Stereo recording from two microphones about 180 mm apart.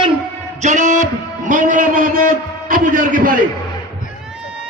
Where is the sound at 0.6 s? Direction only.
45° right (ahead or behind).